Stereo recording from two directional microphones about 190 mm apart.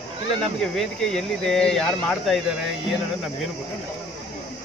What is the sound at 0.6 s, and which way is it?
Speech, centre (ahead or behind).